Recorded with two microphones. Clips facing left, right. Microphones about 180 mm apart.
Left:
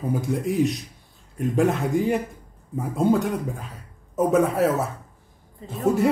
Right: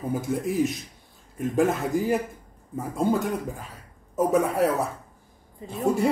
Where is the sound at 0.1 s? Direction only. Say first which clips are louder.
Left 2 dB; centre (ahead or behind).